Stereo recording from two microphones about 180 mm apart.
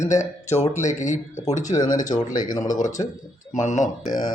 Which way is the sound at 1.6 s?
20° left (ahead or behind).